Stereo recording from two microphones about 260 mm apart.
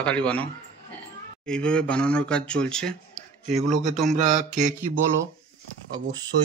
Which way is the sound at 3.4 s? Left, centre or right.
Right.